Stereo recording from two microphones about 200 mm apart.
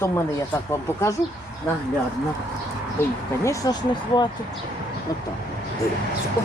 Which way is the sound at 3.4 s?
15° left (ahead or behind).